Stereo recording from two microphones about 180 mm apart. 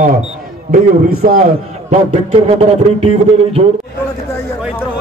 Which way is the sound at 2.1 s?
35° right (ahead or behind).